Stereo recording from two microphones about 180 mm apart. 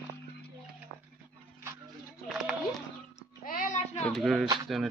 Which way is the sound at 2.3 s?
Centre (ahead or behind).